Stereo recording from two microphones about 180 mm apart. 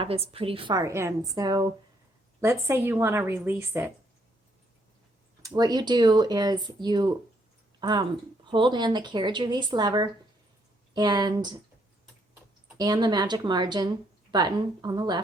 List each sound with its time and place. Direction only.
0.0 s a woman's voice: 30° right (ahead or behind); by 3.9 s 15° right (ahead or behind)
5.5 s speech: 20° right (ahead or behind)
12.7 s speech: 20° right (ahead or behind)